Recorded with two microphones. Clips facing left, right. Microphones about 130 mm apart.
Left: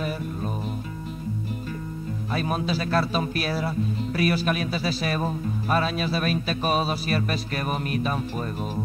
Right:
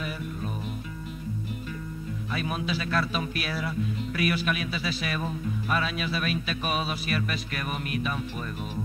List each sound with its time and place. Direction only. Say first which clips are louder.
2.3 s speech: left 4 dB; 40° left (ahead or behind)